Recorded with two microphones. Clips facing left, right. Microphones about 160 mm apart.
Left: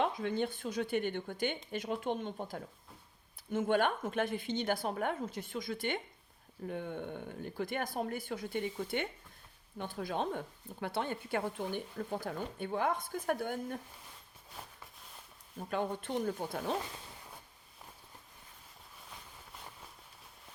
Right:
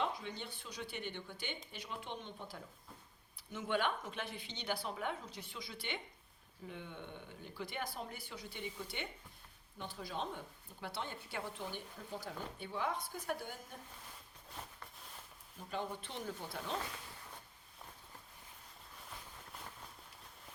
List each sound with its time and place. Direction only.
0.0 s speech: 55° left (ahead or behind)
15.7 s speech: 50° left (ahead or behind)